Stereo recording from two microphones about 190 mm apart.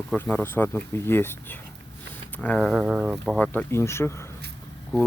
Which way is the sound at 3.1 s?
Centre (ahead or behind).